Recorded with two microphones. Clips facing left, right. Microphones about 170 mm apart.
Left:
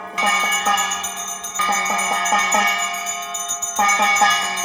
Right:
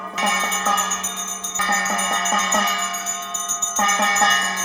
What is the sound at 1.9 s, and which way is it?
Music, 10° left (ahead or behind).